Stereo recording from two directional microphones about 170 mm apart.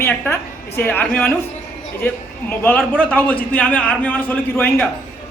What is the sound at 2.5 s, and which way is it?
A man's voice, 10° left (ahead or behind).